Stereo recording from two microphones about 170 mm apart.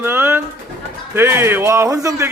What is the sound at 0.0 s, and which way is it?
Pigeon, 15° right (ahead or behind).